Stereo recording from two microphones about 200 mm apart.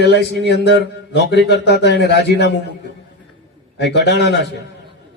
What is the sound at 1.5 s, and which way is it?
A man's voice, 55° left (ahead or behind).